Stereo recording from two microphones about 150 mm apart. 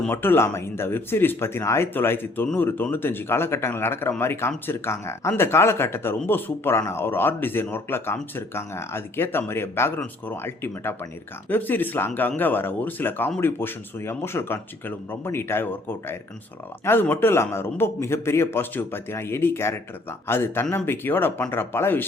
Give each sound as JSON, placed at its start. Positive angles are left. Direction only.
{"t": 0.1, "sound": "a man's voice", "side_deg": 15}